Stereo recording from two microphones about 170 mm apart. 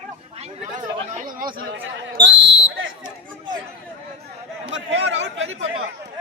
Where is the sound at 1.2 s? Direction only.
55° right (ahead or behind); by 1.9 s 75° right (ahead or behind).